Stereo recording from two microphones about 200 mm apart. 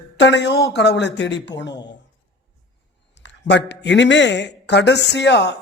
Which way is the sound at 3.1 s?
60° left (ahead or behind).